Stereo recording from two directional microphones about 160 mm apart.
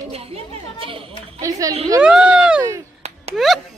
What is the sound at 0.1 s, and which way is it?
Speech, 40° right (ahead or behind).